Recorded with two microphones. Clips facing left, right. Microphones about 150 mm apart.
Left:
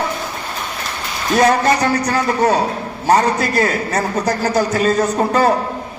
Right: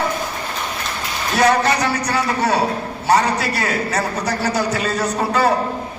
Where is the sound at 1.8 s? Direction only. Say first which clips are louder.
Left 3 dB; 45° left (ahead or behind).